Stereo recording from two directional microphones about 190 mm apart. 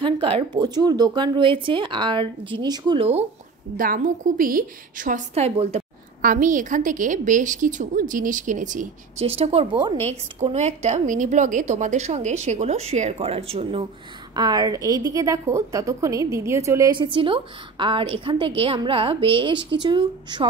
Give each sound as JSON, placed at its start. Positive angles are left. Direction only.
{"t": 0.0, "sound": "a woman's voice", "side_deg": -30}
{"t": 3.7, "sound": "a woman's voice", "side_deg": -45}
{"t": 10.4, "sound": "a woman's voice", "side_deg": -35}
{"t": 14.3, "sound": "a woman's voice", "side_deg": -20}
{"t": 17.0, "sound": "a woman's voice", "side_deg": -25}